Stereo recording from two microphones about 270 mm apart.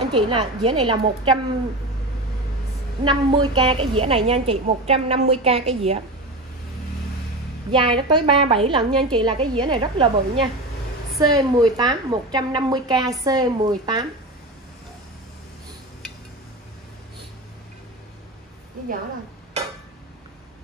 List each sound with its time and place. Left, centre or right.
0.0 s a woman's voice: centre
3.0 s a woman's voice: centre
7.7 s a woman's voice: centre